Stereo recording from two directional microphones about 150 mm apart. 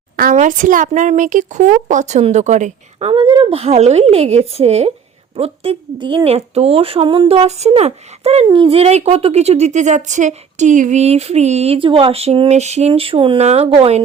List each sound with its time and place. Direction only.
0.2 s a woman's voice: 60° right (ahead or behind)
3.1 s speech: 35° right (ahead or behind)